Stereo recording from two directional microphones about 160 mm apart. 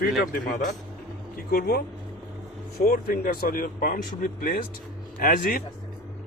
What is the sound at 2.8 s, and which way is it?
Speech, 70° left (ahead or behind).